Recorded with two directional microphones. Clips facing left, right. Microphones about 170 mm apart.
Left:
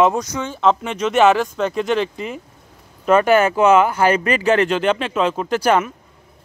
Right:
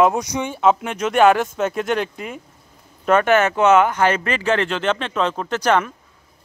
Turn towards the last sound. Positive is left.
turn(degrees=10)  # may be behind; listen again after turning